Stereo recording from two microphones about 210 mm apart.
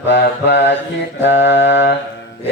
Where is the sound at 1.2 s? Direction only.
55° left (ahead or behind).